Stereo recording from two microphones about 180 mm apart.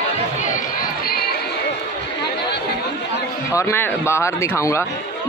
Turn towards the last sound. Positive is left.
turn(degrees=15)  # may be behind; listen again after turning